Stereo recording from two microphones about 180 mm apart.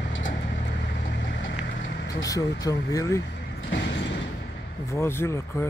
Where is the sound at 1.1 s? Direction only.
80° left.